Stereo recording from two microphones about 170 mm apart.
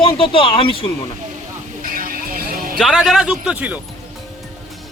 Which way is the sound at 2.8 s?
Centre (ahead or behind).